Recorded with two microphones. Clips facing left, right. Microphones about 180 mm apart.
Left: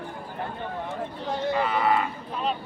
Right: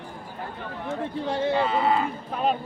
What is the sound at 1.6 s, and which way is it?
Speech, 25° right (ahead or behind).